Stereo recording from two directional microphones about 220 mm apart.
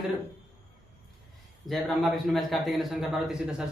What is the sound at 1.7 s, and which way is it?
Speech, centre (ahead or behind).